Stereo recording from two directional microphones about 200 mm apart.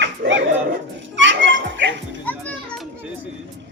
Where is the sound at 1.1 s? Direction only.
65° right (ahead or behind).